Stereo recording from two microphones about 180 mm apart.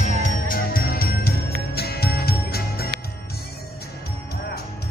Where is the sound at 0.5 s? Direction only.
55° left (ahead or behind).